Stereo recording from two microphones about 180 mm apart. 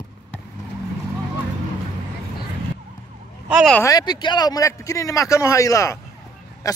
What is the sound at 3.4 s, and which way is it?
Speech, 5° right (ahead or behind).